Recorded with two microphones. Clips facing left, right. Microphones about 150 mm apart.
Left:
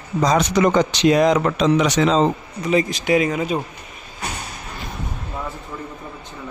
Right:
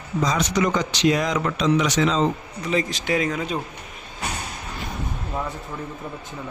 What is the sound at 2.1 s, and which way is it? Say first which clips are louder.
Speech: left 4 dB; 30° left (ahead or behind).